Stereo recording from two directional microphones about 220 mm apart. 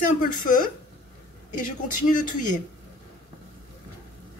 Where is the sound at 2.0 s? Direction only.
35° left (ahead or behind).